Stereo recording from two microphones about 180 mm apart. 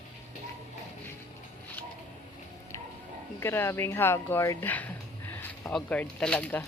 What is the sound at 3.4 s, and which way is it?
Speech, 15° left (ahead or behind).